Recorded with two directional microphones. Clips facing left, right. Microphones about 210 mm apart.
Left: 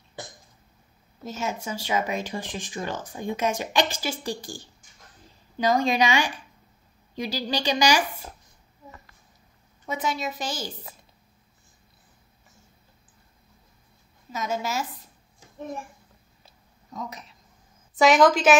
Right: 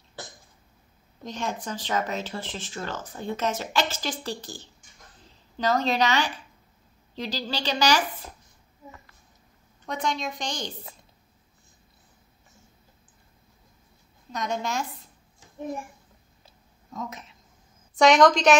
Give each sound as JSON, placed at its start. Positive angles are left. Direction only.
{"t": 1.2, "sound": "speech", "side_deg": 5}
{"t": 9.8, "sound": "a woman's voice", "side_deg": 5}
{"t": 14.3, "sound": "a woman's voice", "side_deg": 5}
{"t": 16.9, "sound": "a woman's voice", "side_deg": 0}